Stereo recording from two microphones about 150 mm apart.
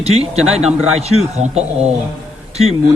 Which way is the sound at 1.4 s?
45° right (ahead or behind).